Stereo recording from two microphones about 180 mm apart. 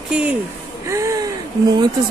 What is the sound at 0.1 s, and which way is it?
Speech, 5° right (ahead or behind).